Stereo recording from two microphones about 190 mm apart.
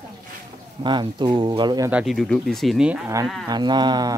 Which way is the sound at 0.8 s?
25° right (ahead or behind).